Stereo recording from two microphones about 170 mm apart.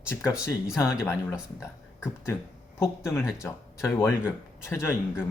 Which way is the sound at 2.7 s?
15° left (ahead or behind).